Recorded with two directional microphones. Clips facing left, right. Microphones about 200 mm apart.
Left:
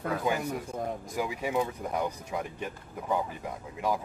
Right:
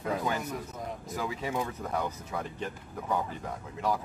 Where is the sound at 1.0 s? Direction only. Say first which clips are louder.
Left 2 dB; 15° left (ahead or behind).